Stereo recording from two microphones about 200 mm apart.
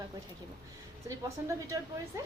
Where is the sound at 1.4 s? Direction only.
10° right (ahead or behind).